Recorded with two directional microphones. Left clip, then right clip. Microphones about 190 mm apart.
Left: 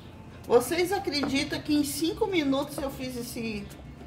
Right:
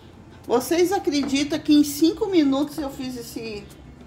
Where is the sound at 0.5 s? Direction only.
35° right (ahead or behind).